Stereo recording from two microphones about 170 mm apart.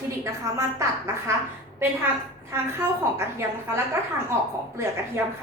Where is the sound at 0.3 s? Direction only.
15° right (ahead or behind).